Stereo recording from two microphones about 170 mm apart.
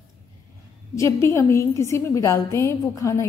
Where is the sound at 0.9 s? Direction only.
15° left (ahead or behind).